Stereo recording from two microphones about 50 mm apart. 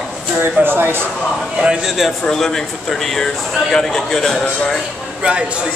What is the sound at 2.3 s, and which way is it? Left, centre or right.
A man's voice, centre.